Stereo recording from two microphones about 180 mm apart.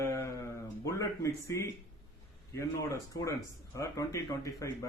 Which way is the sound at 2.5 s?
15° left (ahead or behind).